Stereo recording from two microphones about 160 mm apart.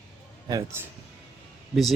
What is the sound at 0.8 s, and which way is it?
Speech, 15° right (ahead or behind).